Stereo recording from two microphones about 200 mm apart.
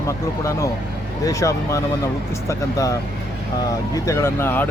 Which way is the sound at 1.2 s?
15° left (ahead or behind).